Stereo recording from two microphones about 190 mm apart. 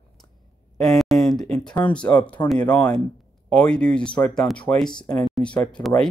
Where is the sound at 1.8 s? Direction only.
5° left (ahead or behind).